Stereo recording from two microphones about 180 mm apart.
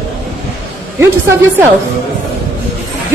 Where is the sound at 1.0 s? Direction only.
15° right (ahead or behind).